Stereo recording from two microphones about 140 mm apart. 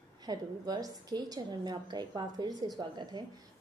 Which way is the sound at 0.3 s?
30° right (ahead or behind).